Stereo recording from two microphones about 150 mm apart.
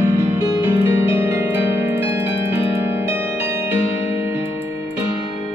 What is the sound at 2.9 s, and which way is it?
Music, 15° right (ahead or behind).